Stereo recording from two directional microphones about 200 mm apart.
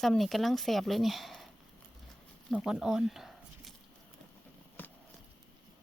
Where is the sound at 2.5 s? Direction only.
5° right (ahead or behind).